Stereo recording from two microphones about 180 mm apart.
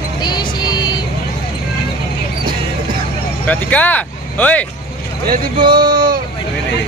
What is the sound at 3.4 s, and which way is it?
Speech, 10° left (ahead or behind).